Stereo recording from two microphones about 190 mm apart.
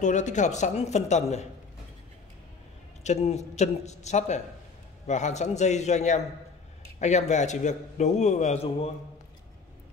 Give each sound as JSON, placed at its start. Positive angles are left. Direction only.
{"t": 0.0, "sound": "a man's voice", "side_deg": 40}
{"t": 3.0, "sound": "a man's voice", "side_deg": 35}